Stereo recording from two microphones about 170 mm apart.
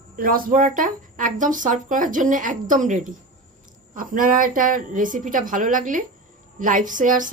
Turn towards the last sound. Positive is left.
turn(degrees=-50)  # may be behind; listen again after turning